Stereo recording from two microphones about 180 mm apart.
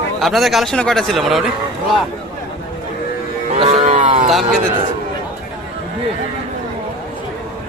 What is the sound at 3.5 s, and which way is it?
Livestock, 40° right (ahead or behind).